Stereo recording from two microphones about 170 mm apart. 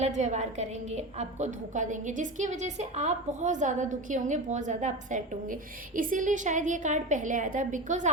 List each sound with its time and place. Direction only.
0.0 s a woman's voice: 45° right (ahead or behind)